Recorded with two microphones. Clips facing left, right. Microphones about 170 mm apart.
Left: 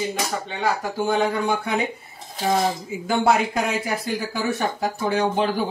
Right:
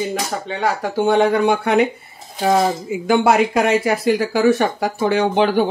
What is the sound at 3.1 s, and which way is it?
Speech, 80° right.